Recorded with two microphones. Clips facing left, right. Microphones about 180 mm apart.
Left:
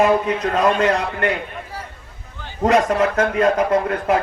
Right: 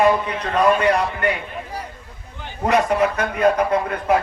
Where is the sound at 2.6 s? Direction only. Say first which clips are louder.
Left 2 dB; 90° left.